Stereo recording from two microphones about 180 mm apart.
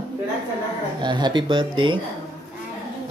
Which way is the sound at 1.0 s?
25° right (ahead or behind).